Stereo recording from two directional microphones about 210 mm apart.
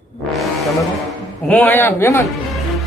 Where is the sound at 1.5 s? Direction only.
10° left (ahead or behind).